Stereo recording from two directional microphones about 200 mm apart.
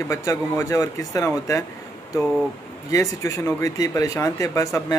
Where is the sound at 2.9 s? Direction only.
15° left (ahead or behind).